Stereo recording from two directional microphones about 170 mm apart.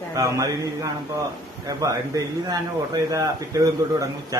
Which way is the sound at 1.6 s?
20° right (ahead or behind).